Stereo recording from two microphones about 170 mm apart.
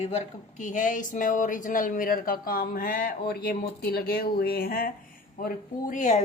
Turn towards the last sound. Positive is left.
turn(degrees=45)  # may be behind; listen again after turning